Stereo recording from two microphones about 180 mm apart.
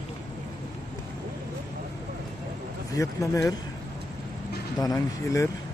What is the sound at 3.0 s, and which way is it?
Speech, 20° left (ahead or behind).